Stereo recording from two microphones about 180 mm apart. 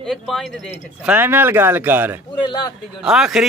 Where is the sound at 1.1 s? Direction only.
10° right (ahead or behind).